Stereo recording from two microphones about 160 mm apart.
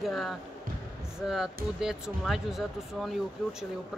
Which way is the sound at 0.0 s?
Centre (ahead or behind).